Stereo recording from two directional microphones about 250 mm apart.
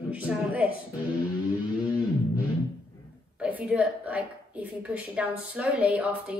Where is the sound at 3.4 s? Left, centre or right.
Centre.